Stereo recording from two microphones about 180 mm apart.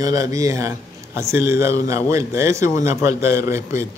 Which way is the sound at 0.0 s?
20° right (ahead or behind).